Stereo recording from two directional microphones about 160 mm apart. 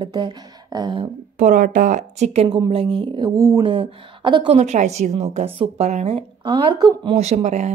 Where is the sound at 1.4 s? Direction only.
55° right (ahead or behind); by 3.6 s 20° right (ahead or behind).